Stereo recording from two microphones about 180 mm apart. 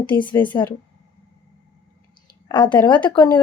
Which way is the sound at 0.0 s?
25° left (ahead or behind).